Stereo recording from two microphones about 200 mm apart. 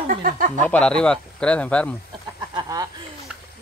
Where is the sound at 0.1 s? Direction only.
45° right (ahead or behind).